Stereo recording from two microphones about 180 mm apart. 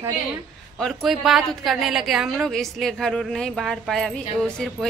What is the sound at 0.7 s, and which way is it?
A woman's voice, centre (ahead or behind).